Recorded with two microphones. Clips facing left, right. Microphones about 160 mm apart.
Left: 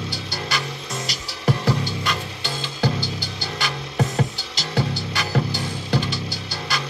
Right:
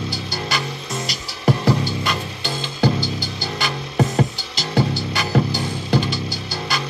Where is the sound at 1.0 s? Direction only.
15° right (ahead or behind).